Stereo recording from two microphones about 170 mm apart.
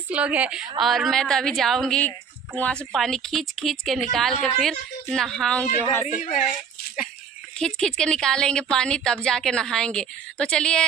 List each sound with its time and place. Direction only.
0.1 s a woman's voice: 10° right (ahead or behind)
6.2 s a child's voice: 45° left (ahead or behind)
7.5 s a woman's voice: 5° left (ahead or behind)